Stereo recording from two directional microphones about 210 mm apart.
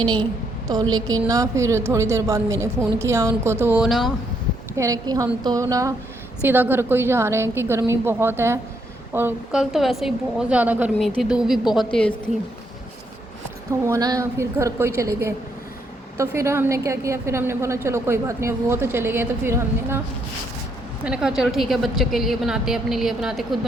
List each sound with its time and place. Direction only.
0.0 s a woman's voice: 20° right (ahead or behind); by 4.1 s centre (ahead or behind)
4.8 s a woman's voice: 15° right (ahead or behind); by 12.3 s 5° left (ahead or behind)
13.8 s a woman's voice: 15° right (ahead or behind)
21.0 s a woman's voice: 5° right (ahead or behind)